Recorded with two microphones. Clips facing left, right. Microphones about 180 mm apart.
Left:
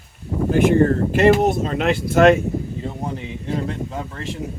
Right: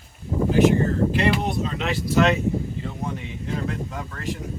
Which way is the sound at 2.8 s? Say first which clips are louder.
Left 3 dB; 35° left (ahead or behind).